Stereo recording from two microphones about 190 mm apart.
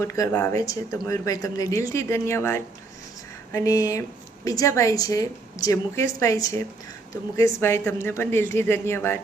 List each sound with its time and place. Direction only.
0.0 s a woman's voice: 20° left (ahead or behind)